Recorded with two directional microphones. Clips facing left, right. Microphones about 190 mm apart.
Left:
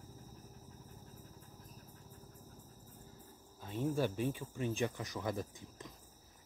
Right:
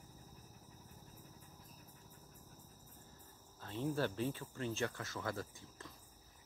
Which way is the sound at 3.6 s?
15° left (ahead or behind).